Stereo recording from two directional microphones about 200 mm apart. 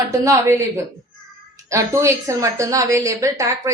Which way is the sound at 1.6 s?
15° right (ahead or behind).